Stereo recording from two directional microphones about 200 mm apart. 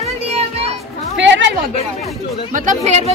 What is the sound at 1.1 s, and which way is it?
Speech, 65° right (ahead or behind).